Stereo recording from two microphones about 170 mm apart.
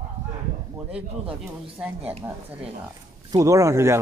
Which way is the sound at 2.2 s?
15° right (ahead or behind).